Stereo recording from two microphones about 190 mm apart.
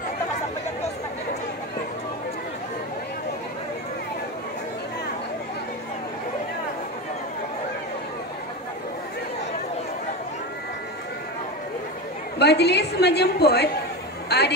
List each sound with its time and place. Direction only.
12.4 s a woman's voice: 60° left (ahead or behind)